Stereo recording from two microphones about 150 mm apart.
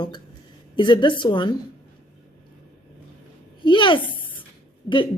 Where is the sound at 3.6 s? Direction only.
35° left (ahead or behind).